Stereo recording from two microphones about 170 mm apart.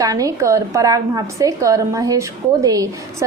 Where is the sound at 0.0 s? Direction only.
20° right (ahead or behind).